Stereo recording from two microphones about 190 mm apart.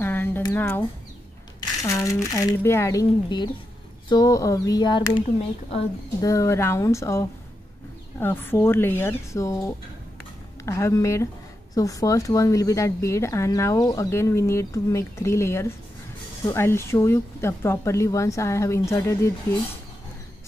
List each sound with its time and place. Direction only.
0.0 s a sound: 10° left (ahead or behind)
0.4 s speech: 10° left (ahead or behind)
1.9 s speech: 15° left (ahead or behind)
6.2 s speech: 15° left (ahead or behind)